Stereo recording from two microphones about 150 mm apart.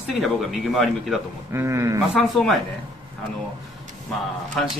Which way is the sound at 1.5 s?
20° right (ahead or behind).